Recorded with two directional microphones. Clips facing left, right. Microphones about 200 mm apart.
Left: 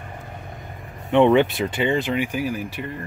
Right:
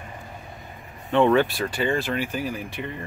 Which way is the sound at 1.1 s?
20° left (ahead or behind).